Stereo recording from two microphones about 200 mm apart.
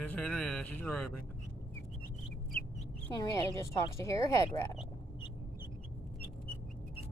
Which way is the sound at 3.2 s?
15° left (ahead or behind).